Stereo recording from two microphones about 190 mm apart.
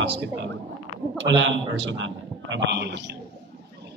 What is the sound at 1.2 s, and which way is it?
A man's voice, 75° right (ahead or behind).